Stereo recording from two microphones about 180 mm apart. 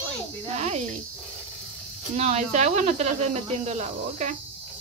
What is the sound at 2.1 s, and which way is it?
Speech, 40° right (ahead or behind).